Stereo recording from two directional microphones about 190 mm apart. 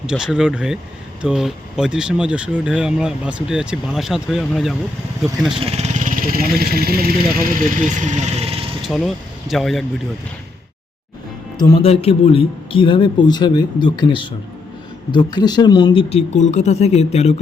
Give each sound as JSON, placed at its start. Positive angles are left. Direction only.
{"t": 0.0, "sound": "speech", "side_deg": -5}
{"t": 5.5, "sound": "speech", "side_deg": -30}
{"t": 8.8, "sound": "speech", "side_deg": 0}
{"t": 11.5, "sound": "speech", "side_deg": 20}
{"t": 11.9, "sound": "speech", "side_deg": 30}